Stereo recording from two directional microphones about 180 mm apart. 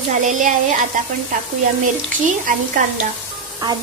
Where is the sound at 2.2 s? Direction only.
45° right (ahead or behind).